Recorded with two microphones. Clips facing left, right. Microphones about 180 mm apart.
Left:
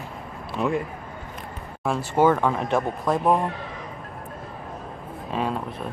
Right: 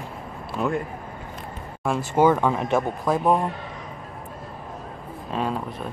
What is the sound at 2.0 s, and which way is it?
Speech, 15° right (ahead or behind).